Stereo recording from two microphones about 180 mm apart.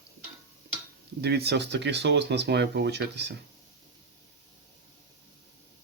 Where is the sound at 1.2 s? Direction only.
65° right (ahead or behind).